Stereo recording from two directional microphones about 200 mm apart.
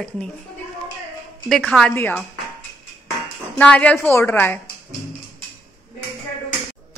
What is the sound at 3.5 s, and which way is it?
Speech, 5° left (ahead or behind).